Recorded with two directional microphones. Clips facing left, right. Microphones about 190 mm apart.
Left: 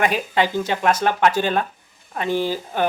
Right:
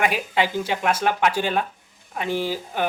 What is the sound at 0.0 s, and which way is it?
Speech, 10° right (ahead or behind).